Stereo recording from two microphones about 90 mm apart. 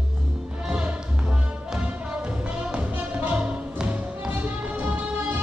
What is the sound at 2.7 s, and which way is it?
Music, 15° right (ahead or behind).